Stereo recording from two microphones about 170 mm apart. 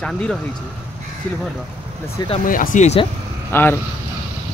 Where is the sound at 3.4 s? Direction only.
10° left (ahead or behind).